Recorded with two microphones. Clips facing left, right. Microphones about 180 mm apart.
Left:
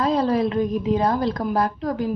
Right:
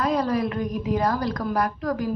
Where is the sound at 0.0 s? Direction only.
25° left (ahead or behind).